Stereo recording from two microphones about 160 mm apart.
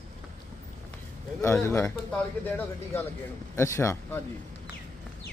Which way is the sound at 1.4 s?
15° left (ahead or behind).